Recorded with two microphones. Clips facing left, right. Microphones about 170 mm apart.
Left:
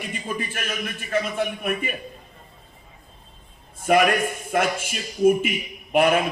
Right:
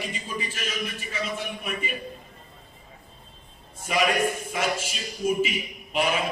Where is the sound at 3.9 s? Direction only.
55° left (ahead or behind).